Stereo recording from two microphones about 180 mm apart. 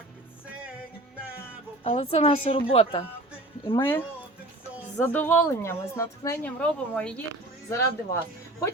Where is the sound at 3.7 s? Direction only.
10° left (ahead or behind).